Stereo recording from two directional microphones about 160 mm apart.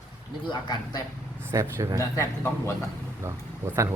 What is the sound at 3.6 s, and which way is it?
Speech, 15° right (ahead or behind).